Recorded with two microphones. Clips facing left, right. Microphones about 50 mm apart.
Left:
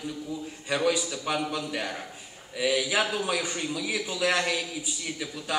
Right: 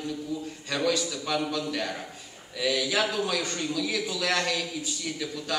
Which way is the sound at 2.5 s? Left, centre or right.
Centre.